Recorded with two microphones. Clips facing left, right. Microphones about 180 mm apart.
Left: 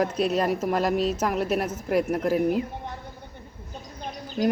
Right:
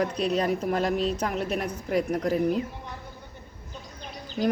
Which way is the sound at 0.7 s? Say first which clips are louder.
Left 2 dB; 40° left (ahead or behind).